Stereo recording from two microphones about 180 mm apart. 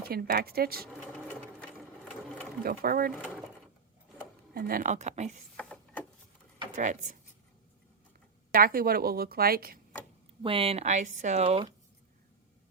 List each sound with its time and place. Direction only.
0.0 s a woman's voice: 55° right (ahead or behind)
1.0 s sewing machine: 5° left (ahead or behind)
2.6 s a woman's voice: 55° right (ahead or behind)
4.5 s speech: 55° right (ahead or behind); by 5.4 s 40° right (ahead or behind)
5.5 s a sound: 5° left (ahead or behind)
6.7 s speech: 45° right (ahead or behind)
8.5 s a woman's voice: 55° right (ahead or behind)
10.4 s speech: 30° right (ahead or behind)